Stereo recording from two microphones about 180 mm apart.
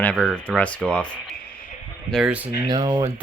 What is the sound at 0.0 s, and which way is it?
Speech, 5° left (ahead or behind).